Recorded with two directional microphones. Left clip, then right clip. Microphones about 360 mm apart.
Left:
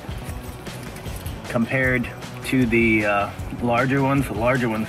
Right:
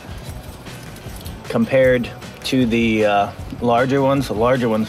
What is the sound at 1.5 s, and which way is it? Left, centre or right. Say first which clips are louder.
Speech: right 7 dB; right.